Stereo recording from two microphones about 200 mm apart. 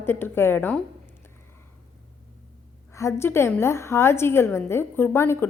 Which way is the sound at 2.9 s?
15° left (ahead or behind).